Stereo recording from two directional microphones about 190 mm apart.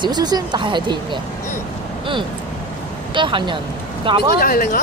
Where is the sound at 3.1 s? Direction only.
25° right (ahead or behind).